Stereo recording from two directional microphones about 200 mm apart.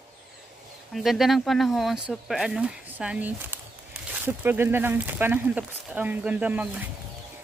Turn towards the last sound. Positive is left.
turn(degrees=-10)  # may be behind; listen again after turning